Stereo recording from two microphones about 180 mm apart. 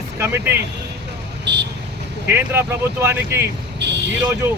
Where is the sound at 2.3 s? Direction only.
15° right (ahead or behind).